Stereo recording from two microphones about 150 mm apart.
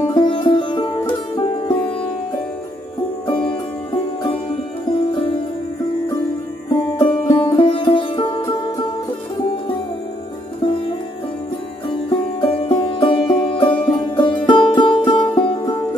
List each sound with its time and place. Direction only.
0.0 s music: 35° left (ahead or behind)
3.3 s music: 35° left (ahead or behind)
6.7 s music: 30° left (ahead or behind)
11.9 s music: 35° left (ahead or behind)